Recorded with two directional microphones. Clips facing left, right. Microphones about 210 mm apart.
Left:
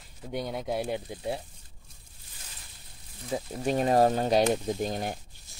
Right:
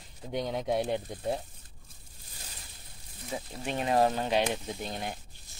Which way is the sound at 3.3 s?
40° left (ahead or behind).